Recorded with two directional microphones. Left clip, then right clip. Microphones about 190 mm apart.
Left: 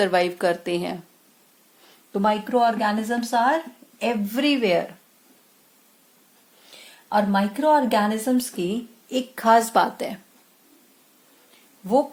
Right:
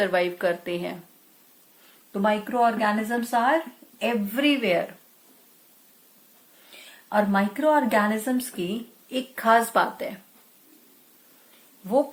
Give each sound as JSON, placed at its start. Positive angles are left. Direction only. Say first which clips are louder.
{"t": 0.0, "sound": "a woman's voice", "louder": "left 3 dB", "side_deg": 55}
{"t": 2.1, "sound": "speech", "louder": "left 2 dB", "side_deg": 40}
{"t": 7.1, "sound": "speech", "louder": "left 2 dB", "side_deg": 45}